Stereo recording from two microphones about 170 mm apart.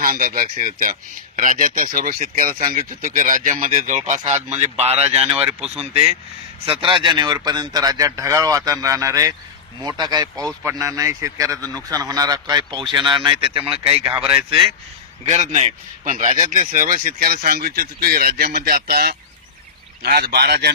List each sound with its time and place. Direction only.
0.0 s speech: 60° right (ahead or behind); by 5.5 s 35° right (ahead or behind)
6.7 s speech: 30° right (ahead or behind)
15.2 s a man's voice: 40° right (ahead or behind); by 20.7 s 75° right (ahead or behind)